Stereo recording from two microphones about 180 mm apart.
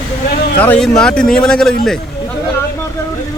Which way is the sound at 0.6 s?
5° left (ahead or behind).